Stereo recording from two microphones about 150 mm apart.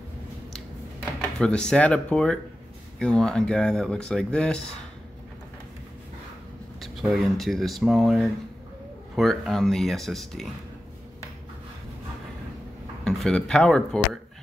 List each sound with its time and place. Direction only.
1.4 s speech: 5° left (ahead or behind)
6.8 s speech: centre (ahead or behind)
13.0 s speech: 5° left (ahead or behind)